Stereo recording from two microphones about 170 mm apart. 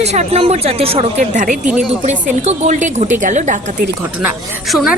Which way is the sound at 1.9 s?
40° right (ahead or behind).